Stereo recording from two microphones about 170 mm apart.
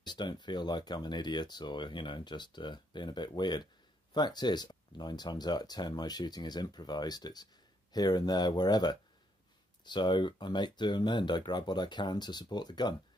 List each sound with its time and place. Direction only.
0.0 s speech: 25° left (ahead or behind)